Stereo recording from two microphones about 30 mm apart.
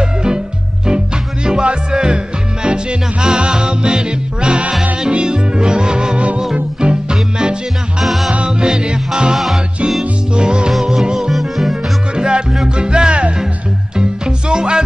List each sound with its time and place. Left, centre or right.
0.0 s music: right
6.1 s music: right
6.5 s music: right
8.0 s music: centre
8.5 s music: right
11.1 s music: centre
12.2 s music: right